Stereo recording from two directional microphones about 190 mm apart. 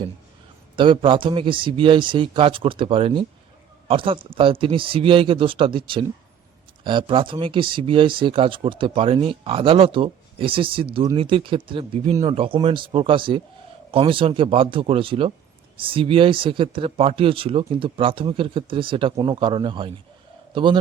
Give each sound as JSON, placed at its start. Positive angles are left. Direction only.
{"t": 0.8, "sound": "speech", "side_deg": -25}